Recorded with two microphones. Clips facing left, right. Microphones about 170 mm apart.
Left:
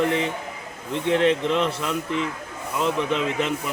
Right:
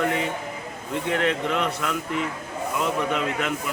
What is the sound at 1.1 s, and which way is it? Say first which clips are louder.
Speech: left 5 dB; 30° left (ahead or behind).